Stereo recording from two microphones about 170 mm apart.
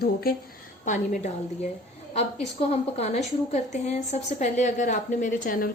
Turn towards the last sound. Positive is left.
turn(degrees=55)  # may be behind; listen again after turning